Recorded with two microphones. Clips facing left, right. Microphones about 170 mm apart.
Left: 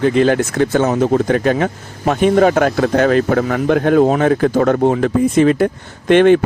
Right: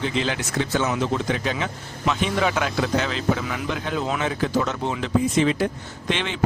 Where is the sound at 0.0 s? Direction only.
50° left (ahead or behind).